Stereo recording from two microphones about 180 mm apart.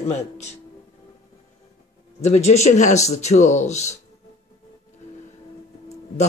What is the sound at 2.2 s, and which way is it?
Speech, 40° left (ahead or behind).